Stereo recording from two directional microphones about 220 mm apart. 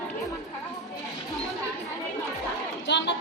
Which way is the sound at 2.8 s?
50° left (ahead or behind).